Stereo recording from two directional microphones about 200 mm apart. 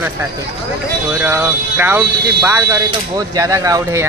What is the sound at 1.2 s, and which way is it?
Speech, 10° right (ahead or behind).